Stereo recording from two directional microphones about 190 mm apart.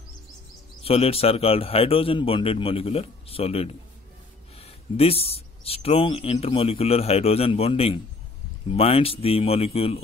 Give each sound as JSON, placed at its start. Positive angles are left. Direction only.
{"t": 0.8, "sound": "speech", "side_deg": 30}